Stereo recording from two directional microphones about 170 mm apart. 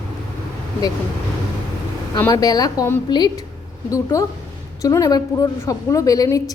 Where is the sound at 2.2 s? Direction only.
20° left (ahead or behind).